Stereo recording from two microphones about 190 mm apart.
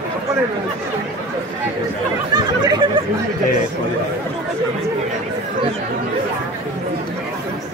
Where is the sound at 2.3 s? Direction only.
20° right (ahead or behind).